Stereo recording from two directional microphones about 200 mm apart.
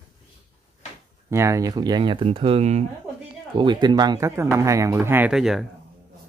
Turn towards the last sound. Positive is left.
turn(degrees=0)  # may be behind; listen again after turning